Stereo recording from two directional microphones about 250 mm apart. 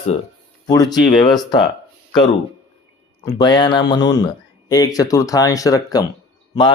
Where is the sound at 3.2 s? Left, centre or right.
Centre.